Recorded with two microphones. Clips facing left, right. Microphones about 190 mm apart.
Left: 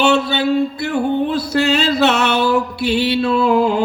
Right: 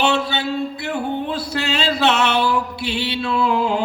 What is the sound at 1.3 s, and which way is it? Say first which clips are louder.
Mantra: left 7 dB; 40° left (ahead or behind).